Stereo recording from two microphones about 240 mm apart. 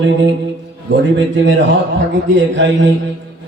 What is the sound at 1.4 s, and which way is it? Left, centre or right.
Speech, right.